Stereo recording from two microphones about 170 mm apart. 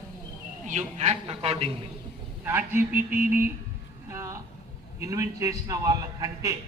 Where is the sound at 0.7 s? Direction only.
45° right (ahead or behind).